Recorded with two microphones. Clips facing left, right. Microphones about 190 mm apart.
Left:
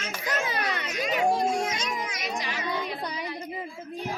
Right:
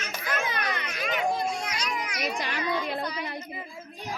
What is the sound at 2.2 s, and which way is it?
Chatter, 60° right (ahead or behind).